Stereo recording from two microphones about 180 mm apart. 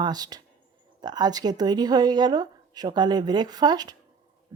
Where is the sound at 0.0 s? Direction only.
20° right (ahead or behind).